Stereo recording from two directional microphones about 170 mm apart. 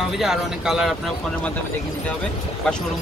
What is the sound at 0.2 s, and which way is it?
Speech, centre (ahead or behind).